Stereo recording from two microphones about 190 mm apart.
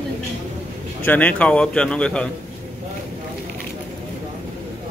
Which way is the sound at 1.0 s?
10° left (ahead or behind).